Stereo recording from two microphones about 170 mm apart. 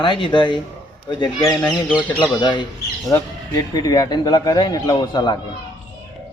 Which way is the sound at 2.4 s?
25° left (ahead or behind).